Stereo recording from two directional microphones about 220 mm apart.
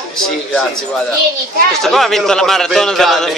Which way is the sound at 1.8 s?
Centre (ahead or behind).